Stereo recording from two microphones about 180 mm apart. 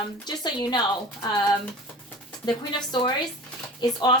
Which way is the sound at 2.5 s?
25° left (ahead or behind).